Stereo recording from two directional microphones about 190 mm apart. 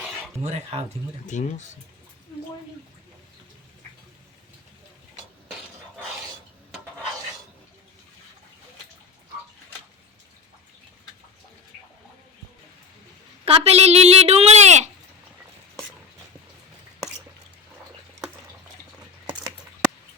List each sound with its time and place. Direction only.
0.7 s speech: 35° right (ahead or behind)
1.3 s speech: 40° left (ahead or behind)
13.4 s a sound: 30° right (ahead or behind)